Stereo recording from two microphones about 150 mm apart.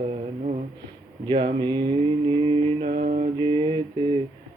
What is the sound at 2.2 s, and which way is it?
Mantra, 35° right (ahead or behind).